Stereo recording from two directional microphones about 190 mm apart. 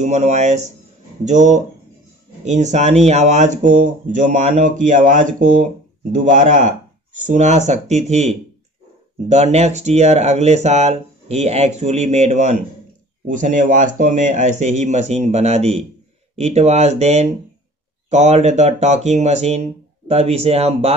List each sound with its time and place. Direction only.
0.0 s speech: 40° right (ahead or behind)